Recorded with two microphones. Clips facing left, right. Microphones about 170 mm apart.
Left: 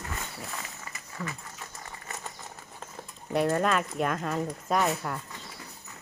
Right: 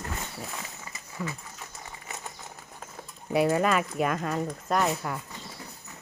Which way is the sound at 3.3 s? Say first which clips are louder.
Right 2 dB; 5° right (ahead or behind).